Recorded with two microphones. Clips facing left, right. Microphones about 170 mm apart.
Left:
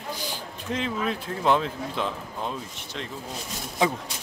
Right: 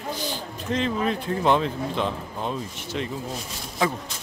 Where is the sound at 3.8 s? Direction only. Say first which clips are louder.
Left 1 dB; 20° left (ahead or behind).